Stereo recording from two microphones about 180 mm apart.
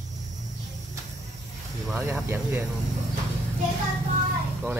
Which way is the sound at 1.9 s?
15° right (ahead or behind).